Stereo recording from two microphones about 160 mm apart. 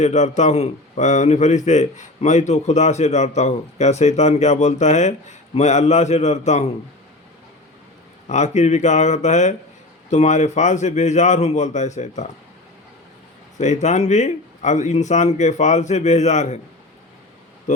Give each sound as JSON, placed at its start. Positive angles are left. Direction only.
{"t": 0.0, "sound": "a man's voice", "side_deg": 45}
{"t": 8.3, "sound": "a man's voice", "side_deg": 45}
{"t": 13.6, "sound": "a man's voice", "side_deg": 45}
{"t": 17.7, "sound": "speech", "side_deg": 45}